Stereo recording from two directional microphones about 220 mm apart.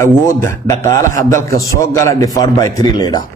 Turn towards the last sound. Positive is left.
turn(degrees=15)  # may be behind; listen again after turning